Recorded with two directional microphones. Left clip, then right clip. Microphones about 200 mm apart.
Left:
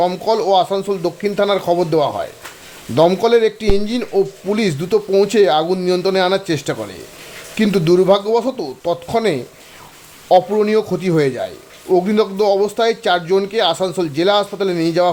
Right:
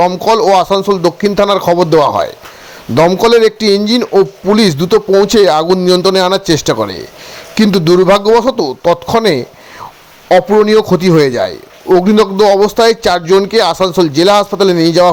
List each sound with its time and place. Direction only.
0.1 s a man's voice: 25° right (ahead or behind)